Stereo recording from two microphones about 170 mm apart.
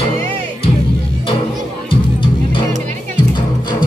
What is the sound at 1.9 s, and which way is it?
Music, 30° left (ahead or behind).